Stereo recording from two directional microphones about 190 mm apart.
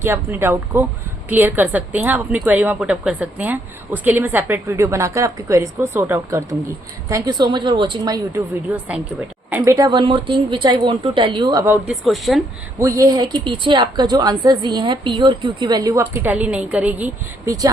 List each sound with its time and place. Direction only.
0.0 s a woman's voice: 10° right (ahead or behind)
8.7 s a woman's voice: 10° right (ahead or behind)
11.6 s a woman's voice: 10° right (ahead or behind)
12.0 s a woman's voice: centre (ahead or behind)
12.8 s a woman's voice: 20° right (ahead or behind)